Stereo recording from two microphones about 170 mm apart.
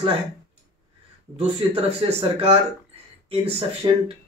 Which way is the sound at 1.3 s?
35° right (ahead or behind).